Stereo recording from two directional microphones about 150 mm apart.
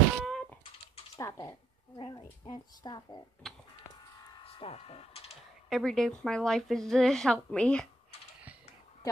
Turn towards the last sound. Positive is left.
turn(degrees=5)  # may be behind; listen again after turning